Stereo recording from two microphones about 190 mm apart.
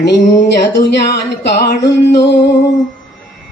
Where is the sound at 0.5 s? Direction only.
65° left (ahead or behind).